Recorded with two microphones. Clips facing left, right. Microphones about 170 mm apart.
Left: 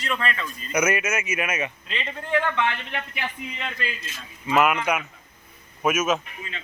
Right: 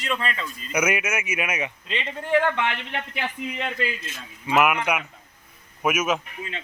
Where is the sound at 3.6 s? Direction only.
15° right (ahead or behind).